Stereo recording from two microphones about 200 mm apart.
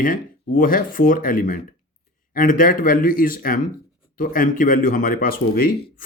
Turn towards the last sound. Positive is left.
turn(degrees=45)  # may be behind; listen again after turning